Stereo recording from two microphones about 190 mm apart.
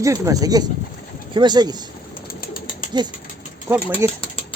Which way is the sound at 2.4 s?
50° left (ahead or behind).